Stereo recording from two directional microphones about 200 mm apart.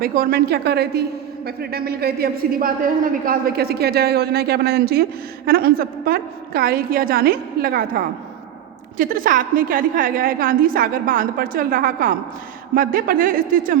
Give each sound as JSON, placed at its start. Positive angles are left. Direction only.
{"t": 0.0, "sound": "a woman's voice", "side_deg": -50}